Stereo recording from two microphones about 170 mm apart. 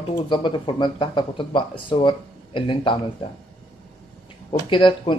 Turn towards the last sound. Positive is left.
turn(degrees=30)  # may be behind; listen again after turning